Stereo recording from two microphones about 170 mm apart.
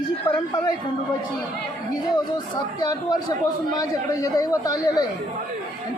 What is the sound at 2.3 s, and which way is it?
Speech, 20° left (ahead or behind).